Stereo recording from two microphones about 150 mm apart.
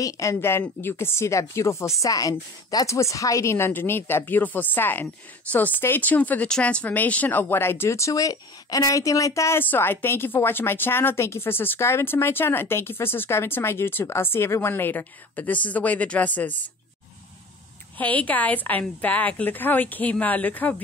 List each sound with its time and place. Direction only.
0.0 s speech: 20° left (ahead or behind)
17.9 s speech: 10° left (ahead or behind)